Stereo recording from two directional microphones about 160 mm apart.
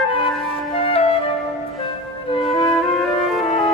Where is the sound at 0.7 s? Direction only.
35° left (ahead or behind).